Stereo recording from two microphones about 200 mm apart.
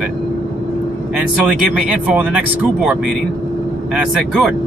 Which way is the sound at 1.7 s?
5° right (ahead or behind).